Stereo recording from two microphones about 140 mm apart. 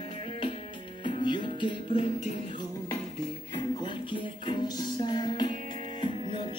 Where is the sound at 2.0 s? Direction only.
55° left (ahead or behind).